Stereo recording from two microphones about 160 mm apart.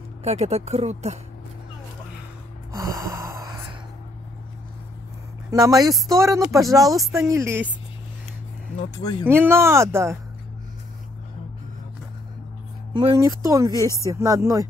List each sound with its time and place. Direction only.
0.2 s speech: 40° right (ahead or behind)
2.7 s gasp: 20° right (ahead or behind)
5.5 s speech: 25° right (ahead or behind)
9.2 s speech: 15° right (ahead or behind)
12.9 s speech: 25° right (ahead or behind)